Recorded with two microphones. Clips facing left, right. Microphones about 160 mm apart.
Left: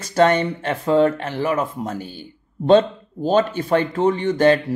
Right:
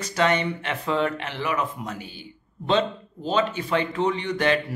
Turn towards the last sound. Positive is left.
turn(degrees=40)  # may be behind; listen again after turning